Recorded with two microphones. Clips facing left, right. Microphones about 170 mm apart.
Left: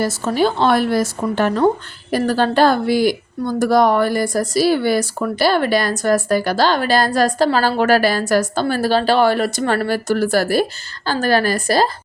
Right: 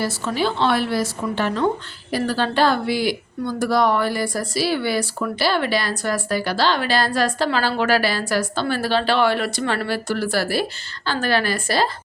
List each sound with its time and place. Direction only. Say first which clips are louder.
0.0 s a woman's voice: left 5 dB; 45° left (ahead or behind)